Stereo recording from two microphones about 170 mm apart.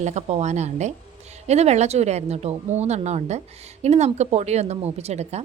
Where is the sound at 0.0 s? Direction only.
40° right (ahead or behind).